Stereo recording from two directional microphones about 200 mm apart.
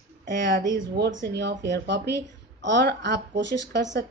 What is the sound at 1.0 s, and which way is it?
A woman's voice, 65° right (ahead or behind).